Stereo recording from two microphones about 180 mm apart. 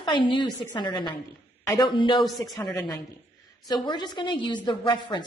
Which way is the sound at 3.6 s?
25° left (ahead or behind).